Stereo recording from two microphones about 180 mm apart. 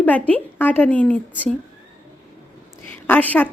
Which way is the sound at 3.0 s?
10° left (ahead or behind).